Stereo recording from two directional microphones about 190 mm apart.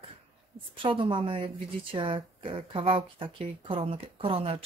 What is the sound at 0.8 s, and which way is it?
A woman's voice, 25° right (ahead or behind).